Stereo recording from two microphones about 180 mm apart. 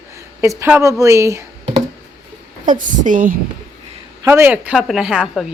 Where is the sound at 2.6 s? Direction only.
45° right (ahead or behind).